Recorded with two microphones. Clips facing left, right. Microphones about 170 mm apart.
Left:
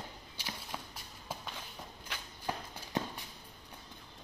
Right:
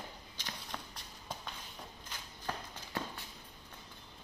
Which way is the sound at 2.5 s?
15° left (ahead or behind).